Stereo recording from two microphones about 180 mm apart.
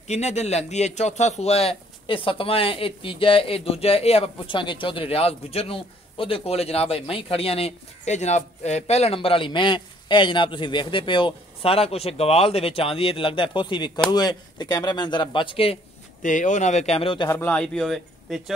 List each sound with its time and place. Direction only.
0.1 s a man's voice: 40° left (ahead or behind)
16.2 s a man's voice: 45° left (ahead or behind); by 17.3 s 30° left (ahead or behind)
17.3 s speech: 10° left (ahead or behind)